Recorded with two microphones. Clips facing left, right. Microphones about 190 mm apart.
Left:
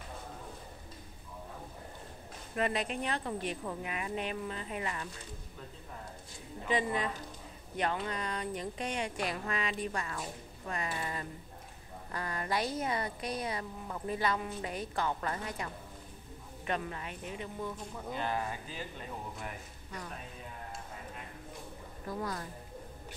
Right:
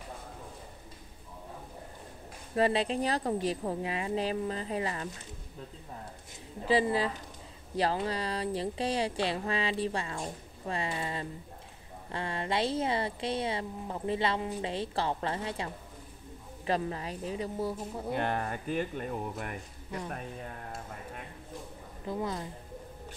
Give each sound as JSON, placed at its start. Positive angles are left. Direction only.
{"t": 2.5, "sound": "speech", "side_deg": -30}
{"t": 6.6, "sound": "speech", "side_deg": -30}
{"t": 18.1, "sound": "speech", "side_deg": -60}
{"t": 22.0, "sound": "speech", "side_deg": -20}